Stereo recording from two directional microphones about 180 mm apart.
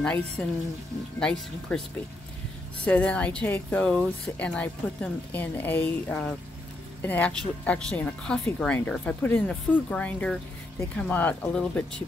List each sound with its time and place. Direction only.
0.4 s speech: 5° left (ahead or behind)
2.8 s speech: 10° left (ahead or behind)